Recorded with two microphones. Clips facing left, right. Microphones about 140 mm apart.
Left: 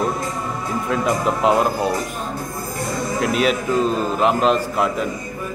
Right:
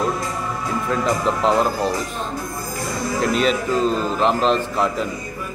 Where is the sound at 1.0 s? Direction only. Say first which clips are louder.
Left 2 dB; 5° left (ahead or behind).